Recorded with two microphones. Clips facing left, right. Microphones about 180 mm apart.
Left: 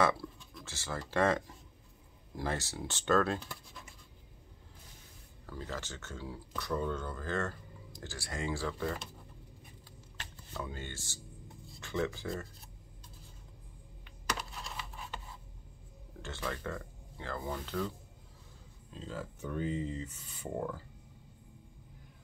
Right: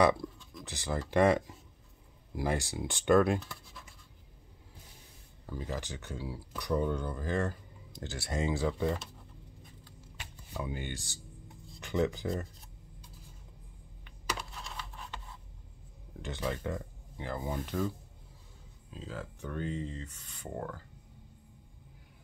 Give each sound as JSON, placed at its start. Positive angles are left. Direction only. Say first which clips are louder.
{"t": 0.7, "sound": "speech", "louder": "right 5 dB", "side_deg": -15}
{"t": 5.5, "sound": "speech", "louder": "right 3 dB", "side_deg": -15}
{"t": 10.1, "sound": "a sound", "louder": "right 2 dB", "side_deg": -15}
{"t": 11.8, "sound": "speech", "louder": "right 4 dB", "side_deg": -15}
{"t": 14.3, "sound": "computer keyboard", "louder": "even", "side_deg": 0}
{"t": 16.2, "sound": "speech", "louder": "right 4 dB", "side_deg": -15}